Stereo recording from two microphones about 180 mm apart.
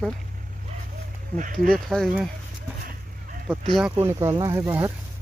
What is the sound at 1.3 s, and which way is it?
Speech, 45° right (ahead or behind).